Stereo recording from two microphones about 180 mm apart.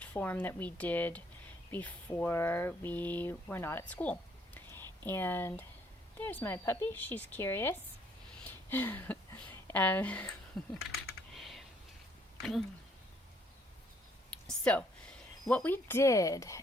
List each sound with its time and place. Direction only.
0.0 s a woman's voice: 10° left (ahead or behind)
8.4 s a sound: 10° left (ahead or behind)
9.6 s a woman's voice: 10° left (ahead or behind)
11.3 s computer keyboard: centre (ahead or behind)
12.4 s speech: centre (ahead or behind)
14.4 s a woman's voice: 5° left (ahead or behind)